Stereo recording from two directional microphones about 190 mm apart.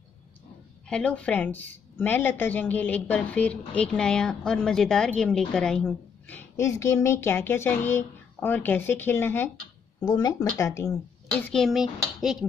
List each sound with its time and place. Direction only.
0.8 s a woman's voice: 5° left (ahead or behind)
11.5 s speech: centre (ahead or behind)